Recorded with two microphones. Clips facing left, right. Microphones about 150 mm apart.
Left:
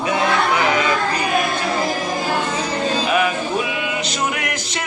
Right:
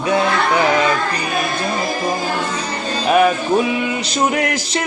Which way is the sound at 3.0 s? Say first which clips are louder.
Right 5 dB; 40° right (ahead or behind).